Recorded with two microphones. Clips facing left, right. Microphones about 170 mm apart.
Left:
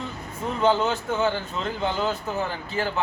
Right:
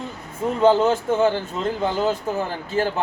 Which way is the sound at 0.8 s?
45° right (ahead or behind).